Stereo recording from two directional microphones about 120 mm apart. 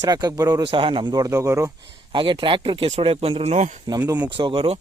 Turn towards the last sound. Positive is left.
turn(degrees=-45)  # may be behind; listen again after turning